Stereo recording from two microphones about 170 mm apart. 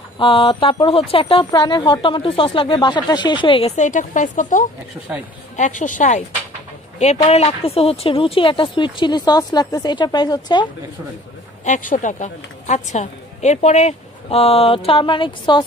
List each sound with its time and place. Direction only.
0.2 s a woman's voice: 30° left (ahead or behind); by 6.2 s 45° left (ahead or behind)
7.2 s speech: 35° left (ahead or behind)
11.6 s a woman's voice: 50° left (ahead or behind); by 15.6 s 30° left (ahead or behind)